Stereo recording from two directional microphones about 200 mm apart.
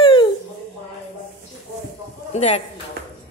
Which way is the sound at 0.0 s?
25° left (ahead or behind).